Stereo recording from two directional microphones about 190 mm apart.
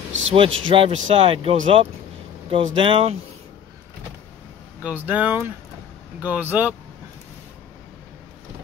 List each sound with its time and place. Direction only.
0.1 s a man's voice: 80° right
0.6 s speech: 25° right (ahead or behind)
4.8 s speech: 10° right (ahead or behind)